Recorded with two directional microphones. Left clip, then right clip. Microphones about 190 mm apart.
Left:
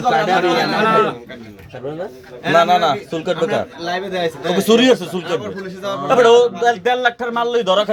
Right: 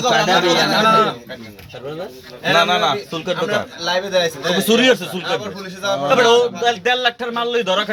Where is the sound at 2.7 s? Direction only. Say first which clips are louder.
Left 2 dB; 10° left (ahead or behind).